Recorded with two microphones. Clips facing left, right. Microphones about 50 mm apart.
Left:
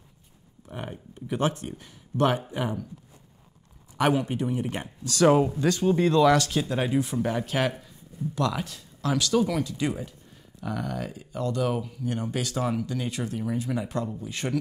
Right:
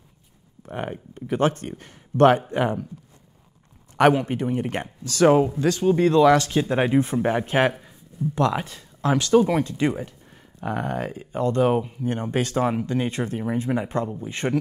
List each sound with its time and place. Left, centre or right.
0.7 s speech: right
4.1 s speech: right
5.3 s speech: centre